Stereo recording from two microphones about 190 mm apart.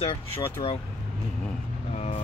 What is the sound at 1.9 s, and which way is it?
Speech, 35° left (ahead or behind).